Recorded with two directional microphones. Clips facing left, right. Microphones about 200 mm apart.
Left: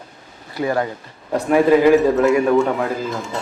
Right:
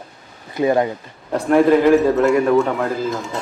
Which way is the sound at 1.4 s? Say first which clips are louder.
Even; 10° left (ahead or behind).